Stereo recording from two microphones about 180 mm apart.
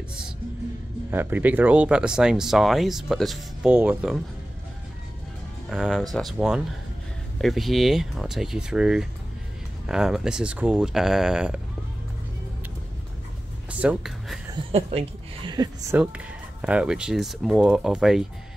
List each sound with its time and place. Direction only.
1.1 s speech: 10° right (ahead or behind)
5.7 s speech: centre (ahead or behind)
13.7 s speech: 5° right (ahead or behind)
14.5 s a woman's voice: 35° right (ahead or behind)
16.6 s speech: 5° right (ahead or behind)